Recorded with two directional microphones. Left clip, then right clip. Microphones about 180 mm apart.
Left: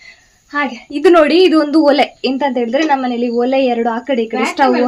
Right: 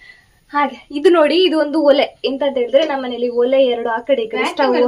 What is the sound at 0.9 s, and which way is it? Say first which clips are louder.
A woman's voice: left 3 dB; 45° left (ahead or behind).